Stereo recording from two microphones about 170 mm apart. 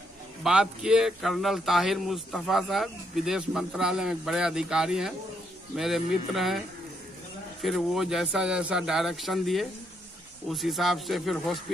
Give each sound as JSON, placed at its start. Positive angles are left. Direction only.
{"t": 0.4, "sound": "speech", "side_deg": -5}
{"t": 7.6, "sound": "speech", "side_deg": 0}